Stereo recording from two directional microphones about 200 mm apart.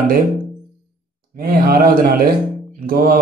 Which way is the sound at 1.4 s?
45° right (ahead or behind).